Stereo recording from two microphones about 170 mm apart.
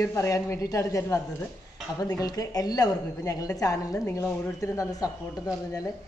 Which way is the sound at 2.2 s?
20° left (ahead or behind).